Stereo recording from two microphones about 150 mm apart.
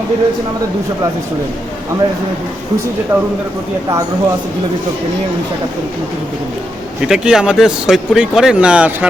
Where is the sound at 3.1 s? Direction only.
10° right (ahead or behind).